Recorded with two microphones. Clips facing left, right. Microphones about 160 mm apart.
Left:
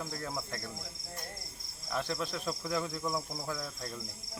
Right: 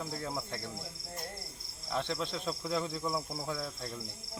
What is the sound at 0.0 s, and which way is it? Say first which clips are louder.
Speech: right 1 dB; 5° right (ahead or behind).